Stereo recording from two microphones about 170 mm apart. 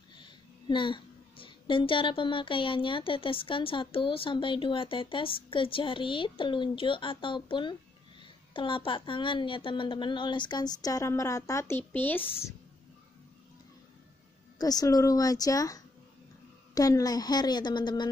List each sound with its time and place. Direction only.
0.1 s a woman's voice: 25° left (ahead or behind)
14.6 s a woman's voice: 20° left (ahead or behind)